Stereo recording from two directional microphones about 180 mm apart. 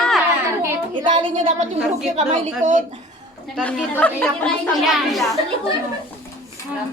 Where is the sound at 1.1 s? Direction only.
45° right (ahead or behind).